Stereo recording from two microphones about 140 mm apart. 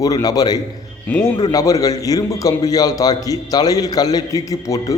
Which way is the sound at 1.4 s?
25° left (ahead or behind).